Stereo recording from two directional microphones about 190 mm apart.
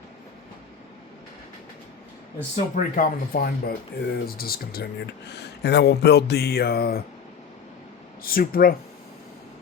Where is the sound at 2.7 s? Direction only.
45° left (ahead or behind).